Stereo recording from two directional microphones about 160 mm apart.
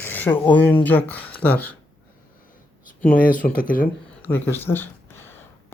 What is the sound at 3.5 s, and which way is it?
Speech, 60° left (ahead or behind).